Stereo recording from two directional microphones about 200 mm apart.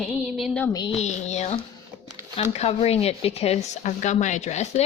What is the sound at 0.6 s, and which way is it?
Speech, 20° left (ahead or behind).